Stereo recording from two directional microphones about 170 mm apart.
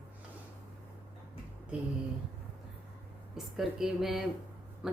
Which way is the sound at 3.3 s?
Centre (ahead or behind).